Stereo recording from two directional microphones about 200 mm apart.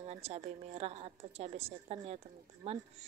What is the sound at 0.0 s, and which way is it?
Speech, 30° right (ahead or behind).